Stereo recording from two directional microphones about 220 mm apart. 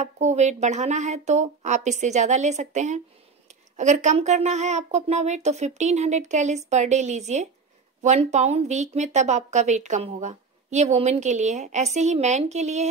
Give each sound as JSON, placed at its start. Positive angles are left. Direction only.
{"t": 0.0, "sound": "a woman's voice", "side_deg": -30}